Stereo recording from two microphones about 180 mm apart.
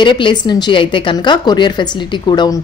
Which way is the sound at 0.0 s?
25° left (ahead or behind).